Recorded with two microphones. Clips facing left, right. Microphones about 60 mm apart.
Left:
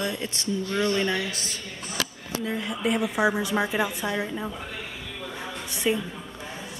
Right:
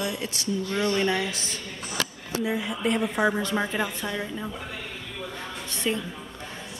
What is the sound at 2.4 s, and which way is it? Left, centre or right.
A woman's voice, centre.